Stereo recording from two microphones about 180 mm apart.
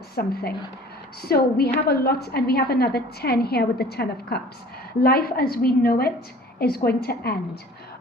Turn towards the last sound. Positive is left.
turn(degrees=60)  # may be behind; listen again after turning